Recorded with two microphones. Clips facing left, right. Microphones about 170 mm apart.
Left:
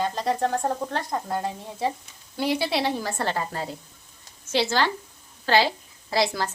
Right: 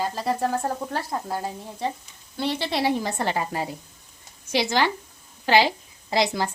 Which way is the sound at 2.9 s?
20° right (ahead or behind).